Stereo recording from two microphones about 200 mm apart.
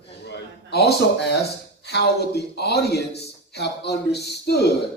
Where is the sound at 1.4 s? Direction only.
55° left (ahead or behind).